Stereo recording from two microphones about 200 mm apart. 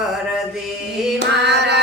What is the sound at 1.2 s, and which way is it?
Carnatic music, 60° right (ahead or behind).